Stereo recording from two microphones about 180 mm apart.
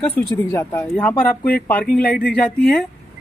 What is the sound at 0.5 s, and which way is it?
Speech, 15° left (ahead or behind).